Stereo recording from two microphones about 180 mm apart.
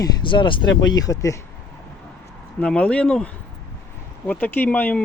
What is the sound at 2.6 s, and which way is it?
Speech, 5° left (ahead or behind).